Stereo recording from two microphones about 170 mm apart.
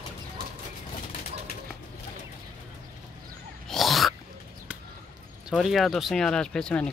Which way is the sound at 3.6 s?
Centre (ahead or behind).